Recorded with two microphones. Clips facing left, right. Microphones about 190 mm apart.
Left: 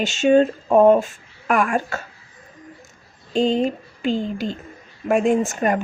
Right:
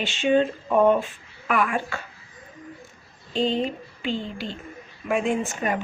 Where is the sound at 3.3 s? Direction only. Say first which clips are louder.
Left 5 dB; 45° left (ahead or behind).